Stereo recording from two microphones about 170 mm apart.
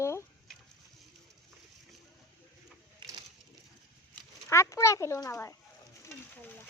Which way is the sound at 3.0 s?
30° right (ahead or behind).